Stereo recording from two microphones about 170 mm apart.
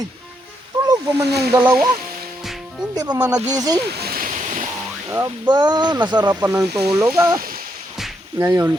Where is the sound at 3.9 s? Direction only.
65° right (ahead or behind).